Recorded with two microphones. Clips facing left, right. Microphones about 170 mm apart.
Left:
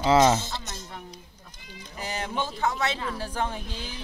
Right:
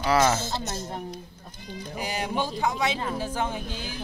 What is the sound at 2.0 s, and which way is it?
Speech, 10° right (ahead or behind).